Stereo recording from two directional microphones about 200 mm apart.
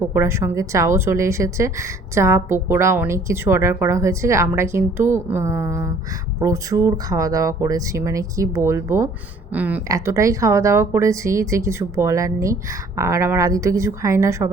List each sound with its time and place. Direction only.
0.0 s a woman's voice: 10° right (ahead or behind)